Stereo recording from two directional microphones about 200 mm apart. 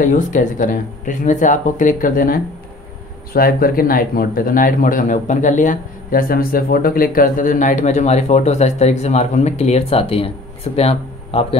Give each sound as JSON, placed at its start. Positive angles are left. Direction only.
{"t": 0.0, "sound": "speech", "side_deg": 40}